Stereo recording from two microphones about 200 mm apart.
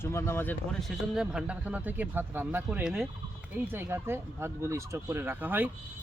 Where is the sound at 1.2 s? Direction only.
5° right (ahead or behind).